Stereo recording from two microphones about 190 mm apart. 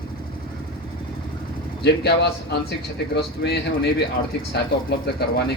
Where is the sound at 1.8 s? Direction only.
60° left (ahead or behind).